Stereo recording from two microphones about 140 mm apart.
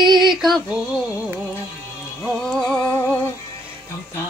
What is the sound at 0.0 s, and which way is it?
Female singing, 30° right (ahead or behind).